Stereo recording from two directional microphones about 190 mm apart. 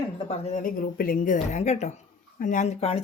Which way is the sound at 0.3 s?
45° left (ahead or behind).